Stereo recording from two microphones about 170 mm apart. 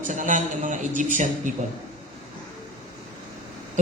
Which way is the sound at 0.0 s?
50° right (ahead or behind).